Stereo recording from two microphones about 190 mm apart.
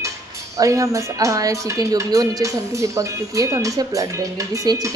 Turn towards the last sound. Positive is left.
turn(degrees=-20)  # may be behind; listen again after turning